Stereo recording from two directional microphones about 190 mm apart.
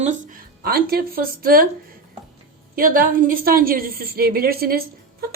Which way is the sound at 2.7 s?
50° right (ahead or behind).